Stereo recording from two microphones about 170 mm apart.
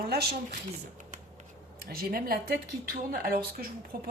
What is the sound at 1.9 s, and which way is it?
Speech, 60° right (ahead or behind).